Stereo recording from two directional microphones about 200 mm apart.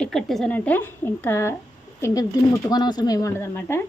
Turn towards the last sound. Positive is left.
turn(degrees=10)  # may be behind; listen again after turning